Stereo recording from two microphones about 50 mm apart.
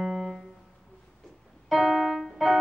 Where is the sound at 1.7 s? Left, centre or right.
Centre.